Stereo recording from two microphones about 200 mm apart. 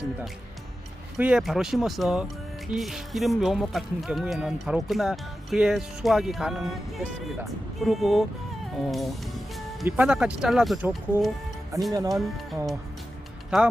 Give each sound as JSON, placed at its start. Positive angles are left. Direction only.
{"t": 1.2, "sound": "speech", "side_deg": -5}
{"t": 11.9, "sound": "music", "side_deg": -15}
{"t": 13.5, "sound": "speech", "side_deg": -5}